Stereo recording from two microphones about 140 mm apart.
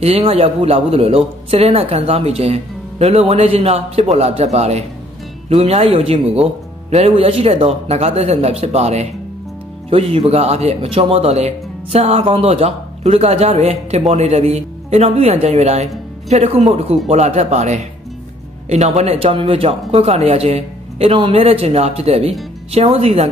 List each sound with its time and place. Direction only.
0.3 s speech: 45° right (ahead or behind)